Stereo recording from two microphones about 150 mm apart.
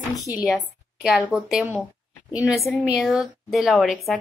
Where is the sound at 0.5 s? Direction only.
Centre (ahead or behind).